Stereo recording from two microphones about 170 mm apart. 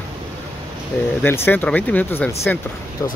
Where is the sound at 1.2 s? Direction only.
10° left (ahead or behind).